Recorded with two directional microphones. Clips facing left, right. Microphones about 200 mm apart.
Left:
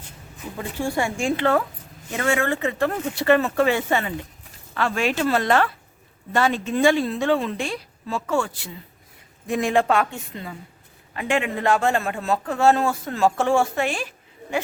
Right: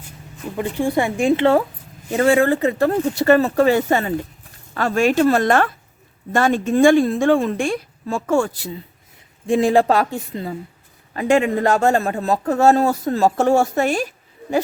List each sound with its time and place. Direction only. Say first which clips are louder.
0.5 s a man's voice: right 6 dB; 15° right (ahead or behind); by 14.1 s 40° right (ahead or behind)